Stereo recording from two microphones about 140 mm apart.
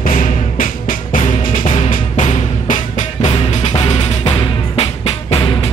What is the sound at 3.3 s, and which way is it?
Music, 50° left (ahead or behind).